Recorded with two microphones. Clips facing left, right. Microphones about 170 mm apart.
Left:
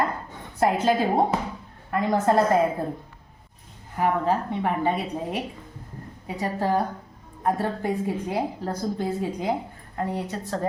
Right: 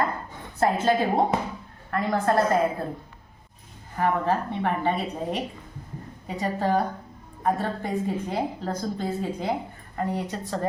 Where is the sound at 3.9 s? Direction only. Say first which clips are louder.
Left 1 dB; 10° left (ahead or behind).